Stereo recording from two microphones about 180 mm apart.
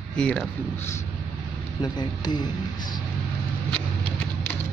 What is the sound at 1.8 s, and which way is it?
A man's voice, 25° left (ahead or behind).